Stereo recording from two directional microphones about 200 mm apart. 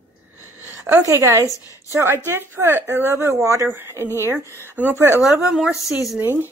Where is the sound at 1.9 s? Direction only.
15° right (ahead or behind).